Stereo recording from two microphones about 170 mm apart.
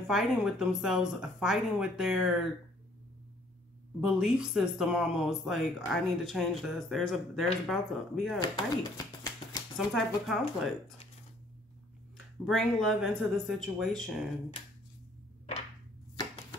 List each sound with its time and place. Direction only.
0.0 s speech: centre (ahead or behind)
4.0 s speech: 5° right (ahead or behind)
8.4 s speech: 25° left (ahead or behind)
9.8 s speech: centre (ahead or behind)
12.4 s speech: centre (ahead or behind)